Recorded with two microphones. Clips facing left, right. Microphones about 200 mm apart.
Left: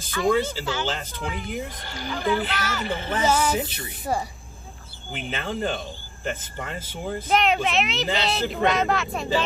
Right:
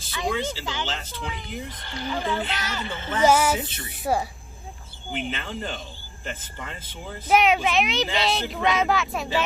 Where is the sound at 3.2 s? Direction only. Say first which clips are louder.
Right 4 dB; 10° right (ahead or behind).